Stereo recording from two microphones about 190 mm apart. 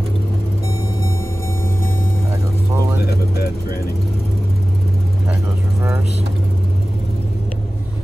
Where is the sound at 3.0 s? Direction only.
55° left (ahead or behind).